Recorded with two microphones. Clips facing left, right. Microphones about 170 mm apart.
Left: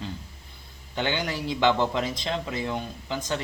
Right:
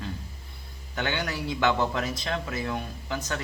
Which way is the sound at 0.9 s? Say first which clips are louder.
Left 2 dB; 20° left (ahead or behind).